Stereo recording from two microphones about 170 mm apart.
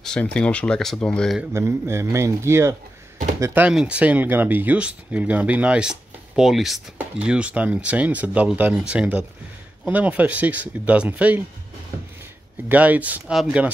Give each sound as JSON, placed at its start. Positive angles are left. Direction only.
{"t": 0.0, "sound": "speech", "side_deg": 5}
{"t": 1.5, "sound": "speech", "side_deg": -15}
{"t": 12.6, "sound": "speech", "side_deg": -10}